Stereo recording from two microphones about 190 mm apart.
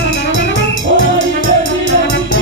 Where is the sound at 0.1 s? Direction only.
75° left (ahead or behind).